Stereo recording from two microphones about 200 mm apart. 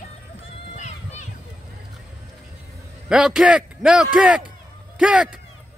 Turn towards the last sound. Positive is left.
turn(degrees=-5)  # may be behind; listen again after turning